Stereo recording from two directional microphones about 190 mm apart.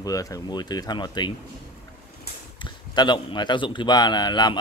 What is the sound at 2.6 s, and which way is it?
Speech, 25° left (ahead or behind).